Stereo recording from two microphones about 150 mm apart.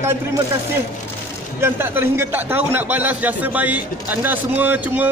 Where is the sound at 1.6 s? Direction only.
15° right (ahead or behind).